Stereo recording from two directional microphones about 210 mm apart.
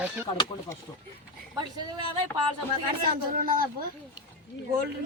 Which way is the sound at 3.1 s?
40° right (ahead or behind).